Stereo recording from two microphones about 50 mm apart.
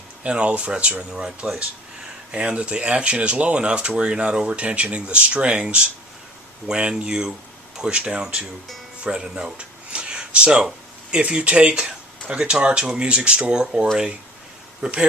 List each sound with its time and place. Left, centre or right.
0.2 s speech: right